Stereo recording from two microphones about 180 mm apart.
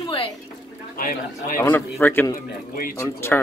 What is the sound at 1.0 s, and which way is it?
Speech, 50° left (ahead or behind).